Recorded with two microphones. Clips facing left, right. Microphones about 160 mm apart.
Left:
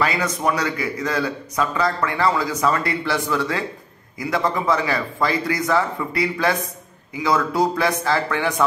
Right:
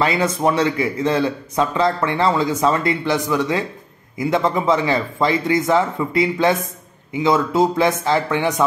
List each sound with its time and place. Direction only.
0.0 s speech: 25° right (ahead or behind)